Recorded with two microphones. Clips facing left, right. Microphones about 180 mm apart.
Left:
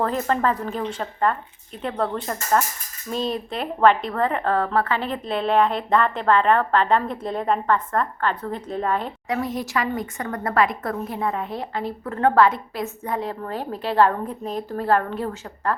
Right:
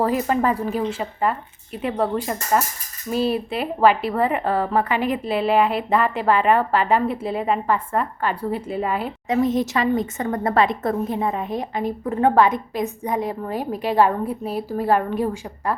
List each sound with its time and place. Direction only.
0.0 s a woman's voice: 10° right (ahead or behind)
9.3 s a woman's voice: 20° right (ahead or behind)